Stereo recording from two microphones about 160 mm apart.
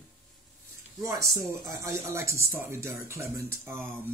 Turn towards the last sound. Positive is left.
turn(degrees=-15)  # may be behind; listen again after turning